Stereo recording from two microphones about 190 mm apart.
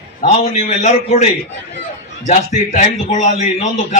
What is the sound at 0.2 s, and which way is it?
A man's voice, 35° left (ahead or behind).